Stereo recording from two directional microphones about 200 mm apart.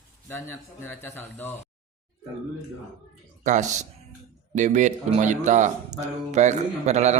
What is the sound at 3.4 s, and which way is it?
Speech, 35° right (ahead or behind).